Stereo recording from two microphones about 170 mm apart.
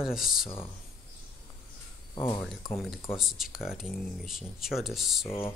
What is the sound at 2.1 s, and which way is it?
Speech, 25° left (ahead or behind).